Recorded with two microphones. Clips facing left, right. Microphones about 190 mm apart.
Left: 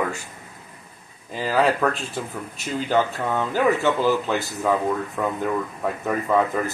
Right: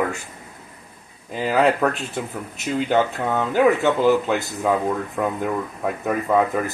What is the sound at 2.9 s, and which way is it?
Speech, 20° right (ahead or behind).